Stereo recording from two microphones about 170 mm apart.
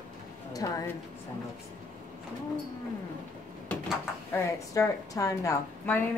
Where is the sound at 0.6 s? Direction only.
20° left (ahead or behind).